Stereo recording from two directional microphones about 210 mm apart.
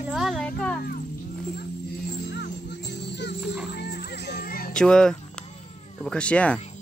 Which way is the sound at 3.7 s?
50° left (ahead or behind).